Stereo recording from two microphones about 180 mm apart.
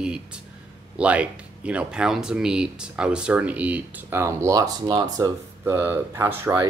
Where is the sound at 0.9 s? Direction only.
5° right (ahead or behind).